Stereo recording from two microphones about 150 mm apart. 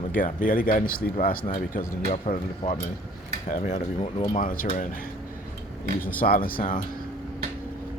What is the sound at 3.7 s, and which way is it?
Speech, 45° left (ahead or behind).